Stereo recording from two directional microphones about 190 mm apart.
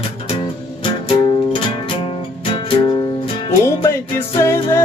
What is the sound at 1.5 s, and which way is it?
Music, 30° left (ahead or behind).